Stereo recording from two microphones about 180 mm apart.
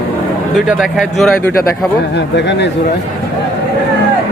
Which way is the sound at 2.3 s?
75° left (ahead or behind).